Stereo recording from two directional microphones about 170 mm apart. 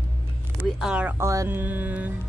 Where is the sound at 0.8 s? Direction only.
5° right (ahead or behind).